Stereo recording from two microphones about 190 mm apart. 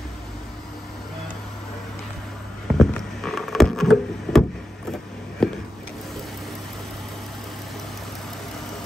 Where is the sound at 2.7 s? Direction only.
Centre (ahead or behind).